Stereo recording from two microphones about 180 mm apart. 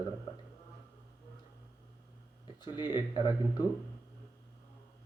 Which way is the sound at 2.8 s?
25° left (ahead or behind).